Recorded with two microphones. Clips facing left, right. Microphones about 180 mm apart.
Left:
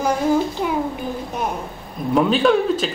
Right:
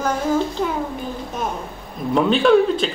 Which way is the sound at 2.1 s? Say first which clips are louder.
Right 2 dB; 5° left (ahead or behind).